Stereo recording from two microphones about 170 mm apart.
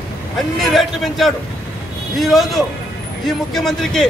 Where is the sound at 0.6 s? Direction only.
Centre (ahead or behind).